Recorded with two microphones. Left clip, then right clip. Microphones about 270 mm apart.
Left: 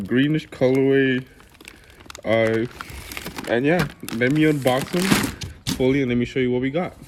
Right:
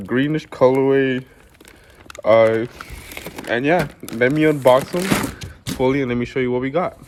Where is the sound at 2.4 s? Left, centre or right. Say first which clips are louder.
Right 4 dB; right.